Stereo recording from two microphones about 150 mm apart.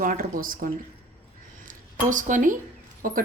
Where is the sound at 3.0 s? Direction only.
65° right (ahead or behind).